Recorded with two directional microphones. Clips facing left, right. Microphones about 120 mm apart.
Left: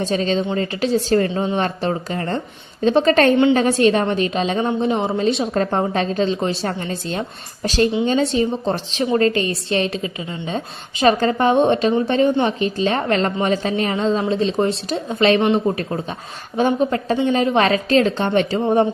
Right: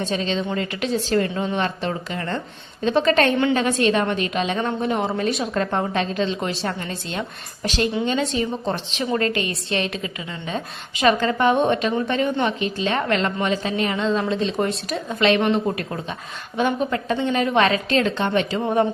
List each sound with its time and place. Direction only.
0.0 s a woman's voice: 40° left (ahead or behind)
1.3 s a woman's voice: 25° left (ahead or behind)
1.5 s a woman's voice: 40° left (ahead or behind)
4.6 s a woman's voice: 20° left (ahead or behind); by 18.6 s 35° left (ahead or behind)